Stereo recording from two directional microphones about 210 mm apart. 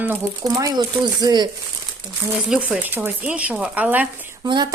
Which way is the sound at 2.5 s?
5° right (ahead or behind).